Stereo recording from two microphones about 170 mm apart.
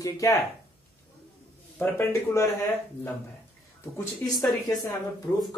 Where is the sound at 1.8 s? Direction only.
15° left (ahead or behind).